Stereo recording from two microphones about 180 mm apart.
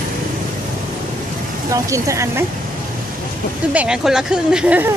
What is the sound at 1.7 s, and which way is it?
Speech, 15° right (ahead or behind).